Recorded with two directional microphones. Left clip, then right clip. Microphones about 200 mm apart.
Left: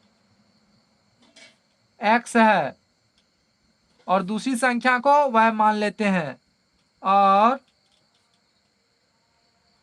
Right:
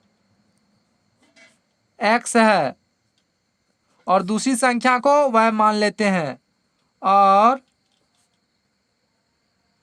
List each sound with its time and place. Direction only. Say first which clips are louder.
2.0 s speech: right 2 dB; 55° right (ahead or behind)
4.0 s speech: right 4 dB; 55° right (ahead or behind)